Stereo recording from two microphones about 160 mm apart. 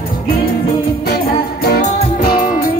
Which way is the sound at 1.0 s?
80° left.